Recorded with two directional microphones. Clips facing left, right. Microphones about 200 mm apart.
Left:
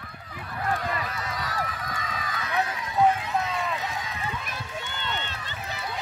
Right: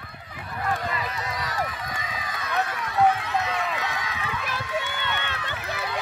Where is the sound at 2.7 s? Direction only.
70° right (ahead or behind); by 6.0 s 85° right.